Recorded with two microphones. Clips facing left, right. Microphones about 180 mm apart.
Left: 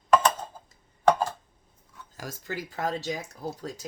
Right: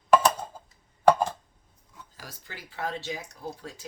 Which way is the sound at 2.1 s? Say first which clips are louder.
Left 10 dB; 45° left (ahead or behind).